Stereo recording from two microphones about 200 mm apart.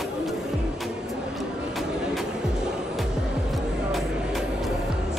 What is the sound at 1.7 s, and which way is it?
Vehicle, centre (ahead or behind).